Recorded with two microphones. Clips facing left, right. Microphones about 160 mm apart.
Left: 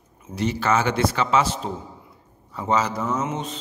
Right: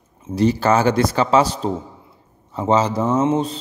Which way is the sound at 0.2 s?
35° right (ahead or behind).